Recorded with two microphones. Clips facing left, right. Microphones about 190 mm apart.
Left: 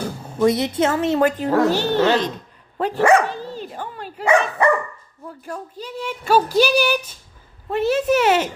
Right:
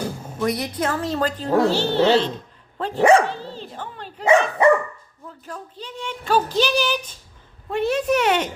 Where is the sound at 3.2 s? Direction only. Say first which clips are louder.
Left 2 dB; 15° left (ahead or behind).